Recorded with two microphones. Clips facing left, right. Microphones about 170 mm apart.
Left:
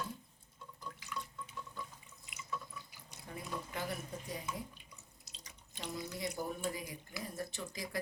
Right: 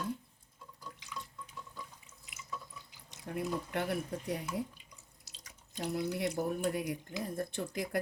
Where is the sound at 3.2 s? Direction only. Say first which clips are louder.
Right 8 dB; 65° right (ahead or behind).